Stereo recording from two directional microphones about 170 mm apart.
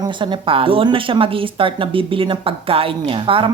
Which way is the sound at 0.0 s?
30° right (ahead or behind).